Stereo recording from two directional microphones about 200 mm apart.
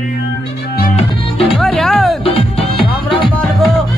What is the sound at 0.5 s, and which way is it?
Music, 50° left (ahead or behind).